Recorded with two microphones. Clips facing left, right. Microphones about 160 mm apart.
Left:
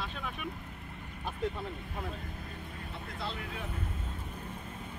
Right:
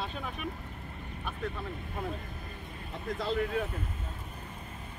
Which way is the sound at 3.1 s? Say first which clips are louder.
Right 10 dB; 45° right (ahead or behind).